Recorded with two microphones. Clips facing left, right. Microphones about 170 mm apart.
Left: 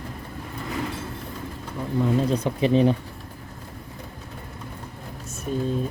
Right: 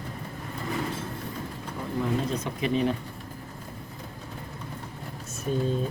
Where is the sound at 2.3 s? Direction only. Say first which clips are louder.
Left 7 dB; 35° left (ahead or behind).